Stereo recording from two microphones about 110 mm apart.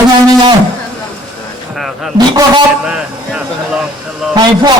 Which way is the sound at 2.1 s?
40° right (ahead or behind).